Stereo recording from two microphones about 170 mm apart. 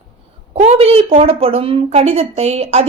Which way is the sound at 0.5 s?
35° right (ahead or behind).